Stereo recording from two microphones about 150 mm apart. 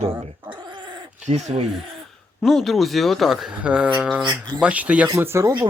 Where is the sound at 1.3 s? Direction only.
45° right (ahead or behind).